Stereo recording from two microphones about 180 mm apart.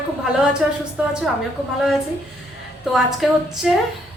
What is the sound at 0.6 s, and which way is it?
Speech, 5° right (ahead or behind).